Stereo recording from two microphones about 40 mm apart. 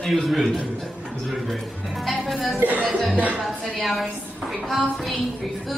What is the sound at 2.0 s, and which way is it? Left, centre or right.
Speech, centre.